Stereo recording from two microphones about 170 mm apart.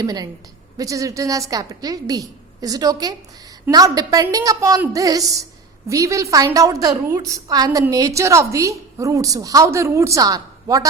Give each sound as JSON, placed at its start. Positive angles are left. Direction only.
{"t": 0.0, "sound": "a woman's voice", "side_deg": -20}